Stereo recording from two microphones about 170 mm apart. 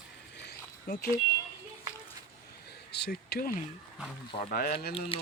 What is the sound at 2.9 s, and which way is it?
Speech, 75° left (ahead or behind).